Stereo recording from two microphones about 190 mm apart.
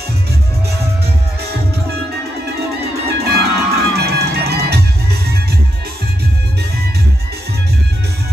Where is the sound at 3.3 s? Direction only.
55° right (ahead or behind).